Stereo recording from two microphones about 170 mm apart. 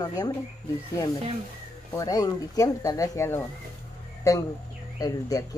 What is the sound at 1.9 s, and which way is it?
Speech, 20° left (ahead or behind).